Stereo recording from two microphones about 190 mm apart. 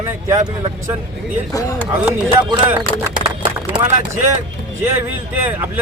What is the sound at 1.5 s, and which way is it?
Speech, 15° left (ahead or behind).